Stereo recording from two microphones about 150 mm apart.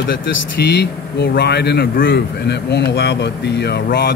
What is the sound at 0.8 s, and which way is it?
A man's voice, 90° left.